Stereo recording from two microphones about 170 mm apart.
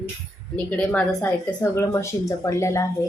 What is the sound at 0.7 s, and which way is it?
A woman's voice, 10° left (ahead or behind).